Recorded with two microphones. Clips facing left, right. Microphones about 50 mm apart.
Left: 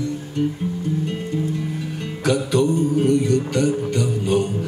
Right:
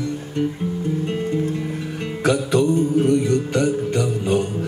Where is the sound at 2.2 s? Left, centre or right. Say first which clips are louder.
Right 1 dB; right.